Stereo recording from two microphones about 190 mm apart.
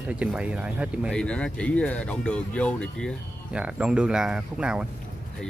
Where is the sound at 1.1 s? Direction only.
5° left (ahead or behind).